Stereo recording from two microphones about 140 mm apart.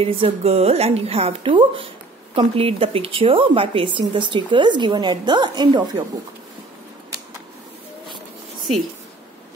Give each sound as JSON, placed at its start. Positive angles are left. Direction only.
{"t": 0.0, "sound": "a woman's voice", "side_deg": -45}